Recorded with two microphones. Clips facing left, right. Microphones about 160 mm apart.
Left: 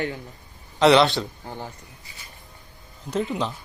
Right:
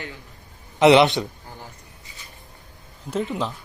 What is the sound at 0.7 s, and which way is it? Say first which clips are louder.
Speech: right 2 dB; 20° right (ahead or behind).